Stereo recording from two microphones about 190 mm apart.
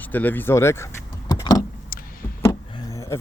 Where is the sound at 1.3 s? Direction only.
20° left (ahead or behind).